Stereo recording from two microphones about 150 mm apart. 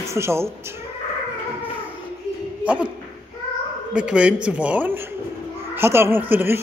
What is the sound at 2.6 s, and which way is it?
Speech, 10° right (ahead or behind).